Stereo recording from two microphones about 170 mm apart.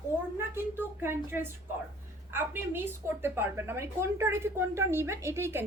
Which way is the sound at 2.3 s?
15° right (ahead or behind).